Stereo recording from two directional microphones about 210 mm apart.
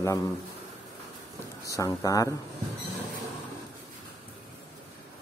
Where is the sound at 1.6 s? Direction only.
15° left (ahead or behind).